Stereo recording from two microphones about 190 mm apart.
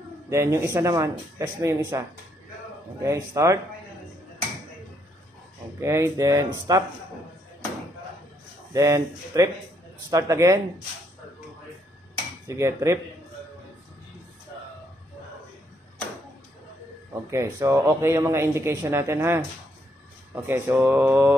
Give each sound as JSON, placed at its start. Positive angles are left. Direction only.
{"t": 0.3, "sound": "speech", "side_deg": -15}
{"t": 5.8, "sound": "speech", "side_deg": -15}
{"t": 8.7, "sound": "speech", "side_deg": -15}
{"t": 12.4, "sound": "speech", "side_deg": -15}
{"t": 17.1, "sound": "speech", "side_deg": -15}